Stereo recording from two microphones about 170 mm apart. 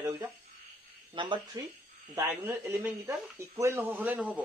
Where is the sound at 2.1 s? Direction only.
15° right (ahead or behind).